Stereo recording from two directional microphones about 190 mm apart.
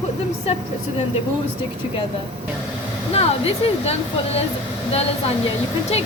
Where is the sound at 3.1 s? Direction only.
30° left (ahead or behind).